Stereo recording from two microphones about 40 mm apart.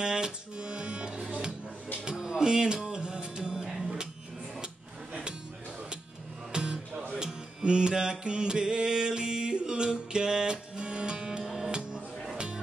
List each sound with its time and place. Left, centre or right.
0.0 s music: centre
3.8 s a sound: centre
6.5 s music: centre